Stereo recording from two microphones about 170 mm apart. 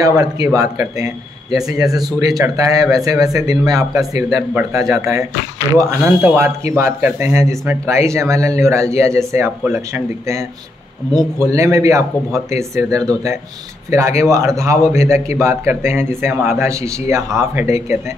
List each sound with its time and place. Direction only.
0.0 s speech: 20° right (ahead or behind)